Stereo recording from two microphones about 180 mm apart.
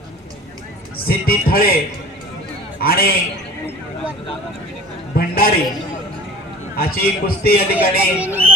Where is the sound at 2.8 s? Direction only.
55° left (ahead or behind).